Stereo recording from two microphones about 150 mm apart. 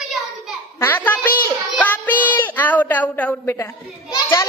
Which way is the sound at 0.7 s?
15° left (ahead or behind).